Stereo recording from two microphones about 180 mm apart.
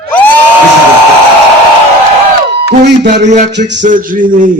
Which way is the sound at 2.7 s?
70° right (ahead or behind).